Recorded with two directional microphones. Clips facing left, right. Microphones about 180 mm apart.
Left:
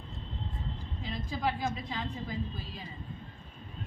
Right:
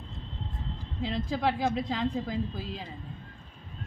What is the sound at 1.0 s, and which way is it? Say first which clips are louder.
A woman's voice: right 5 dB; 90° right.